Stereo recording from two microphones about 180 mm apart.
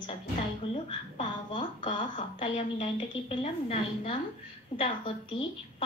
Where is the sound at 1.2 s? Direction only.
25° left (ahead or behind).